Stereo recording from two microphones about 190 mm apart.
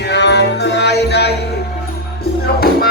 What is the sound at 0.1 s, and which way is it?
Music, 65° left (ahead or behind).